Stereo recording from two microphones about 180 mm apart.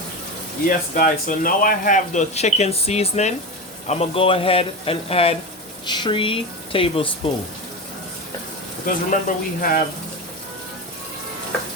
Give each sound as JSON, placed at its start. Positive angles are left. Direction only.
{"t": 0.7, "sound": "speech", "side_deg": 50}
{"t": 9.0, "sound": "speech", "side_deg": 50}